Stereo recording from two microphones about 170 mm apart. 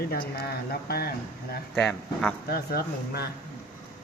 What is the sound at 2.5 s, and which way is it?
Speech, 65° left (ahead or behind).